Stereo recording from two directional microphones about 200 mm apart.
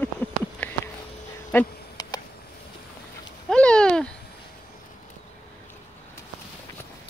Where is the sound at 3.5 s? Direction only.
5° left (ahead or behind).